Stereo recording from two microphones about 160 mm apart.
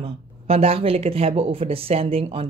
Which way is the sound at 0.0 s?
40° right (ahead or behind).